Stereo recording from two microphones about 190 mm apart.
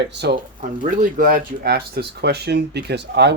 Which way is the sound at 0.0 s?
65° right (ahead or behind).